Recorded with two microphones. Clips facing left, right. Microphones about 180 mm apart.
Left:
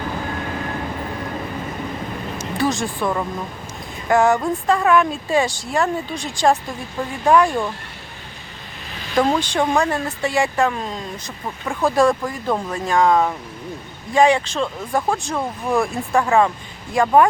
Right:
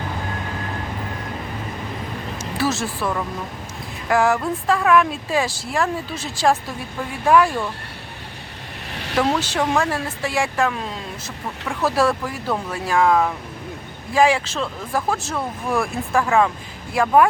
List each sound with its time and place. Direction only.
2.6 s speech: centre (ahead or behind)
4.1 s speech: centre (ahead or behind)
8.9 s vehicle: 70° right (ahead or behind)
9.1 s speech: 5° right (ahead or behind)
11.8 s speech: 5° right (ahead or behind)